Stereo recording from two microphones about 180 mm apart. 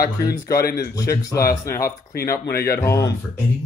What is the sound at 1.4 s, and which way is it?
Speech, 55° left (ahead or behind).